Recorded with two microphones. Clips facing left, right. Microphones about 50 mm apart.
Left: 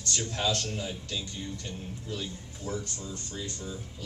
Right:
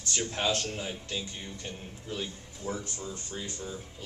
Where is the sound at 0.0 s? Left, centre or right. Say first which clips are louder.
Even; right.